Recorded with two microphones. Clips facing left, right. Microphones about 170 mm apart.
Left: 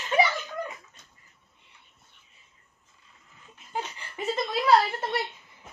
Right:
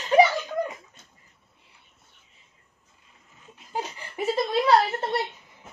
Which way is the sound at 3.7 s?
40° right (ahead or behind).